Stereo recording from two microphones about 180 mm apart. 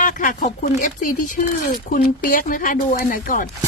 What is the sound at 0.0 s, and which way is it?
Speech, 45° left (ahead or behind).